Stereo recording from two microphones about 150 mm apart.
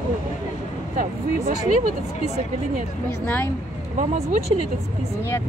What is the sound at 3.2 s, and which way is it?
Speech, 10° left (ahead or behind).